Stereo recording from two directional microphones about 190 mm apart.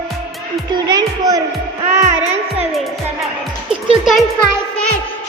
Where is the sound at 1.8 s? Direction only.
35° right (ahead or behind).